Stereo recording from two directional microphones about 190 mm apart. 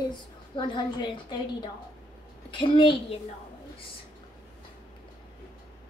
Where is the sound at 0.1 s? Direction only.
25° left (ahead or behind).